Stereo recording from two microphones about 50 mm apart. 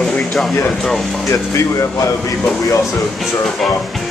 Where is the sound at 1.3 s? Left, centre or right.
Left.